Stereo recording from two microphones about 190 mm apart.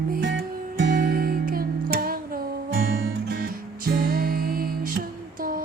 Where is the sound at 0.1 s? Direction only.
60° right (ahead or behind).